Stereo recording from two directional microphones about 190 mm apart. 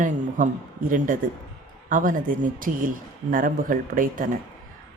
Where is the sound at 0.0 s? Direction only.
40° right (ahead or behind).